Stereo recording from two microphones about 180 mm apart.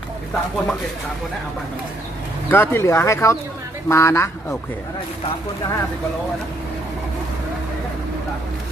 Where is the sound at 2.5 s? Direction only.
10° left (ahead or behind).